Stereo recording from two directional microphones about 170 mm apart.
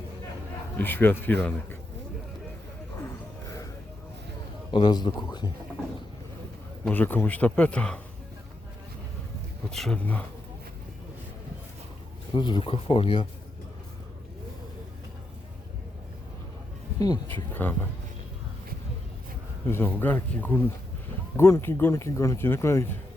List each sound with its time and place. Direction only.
0.8 s speech: 10° left (ahead or behind)
4.7 s a man's voice: 25° left (ahead or behind)
6.8 s speech: 10° left (ahead or behind)
9.6 s speech: 5° left (ahead or behind)
12.3 s speech: 25° left (ahead or behind)
17.0 s a man's voice: 20° left (ahead or behind)
17.3 s speech: 10° left (ahead or behind)
19.6 s speech: 10° left (ahead or behind)